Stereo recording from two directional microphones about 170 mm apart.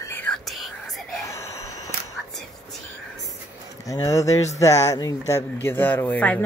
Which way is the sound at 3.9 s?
15° left (ahead or behind).